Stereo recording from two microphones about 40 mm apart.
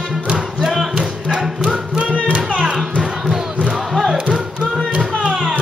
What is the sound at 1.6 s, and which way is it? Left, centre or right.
Music, right.